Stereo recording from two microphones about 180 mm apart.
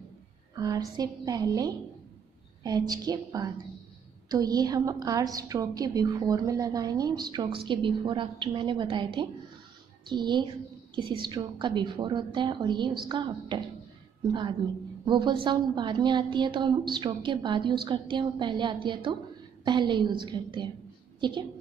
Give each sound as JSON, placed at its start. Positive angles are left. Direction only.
{"t": 0.6, "sound": "a sound", "side_deg": -20}
{"t": 0.9, "sound": "a woman's voice", "side_deg": -20}
{"t": 15.0, "sound": "a woman's voice", "side_deg": -25}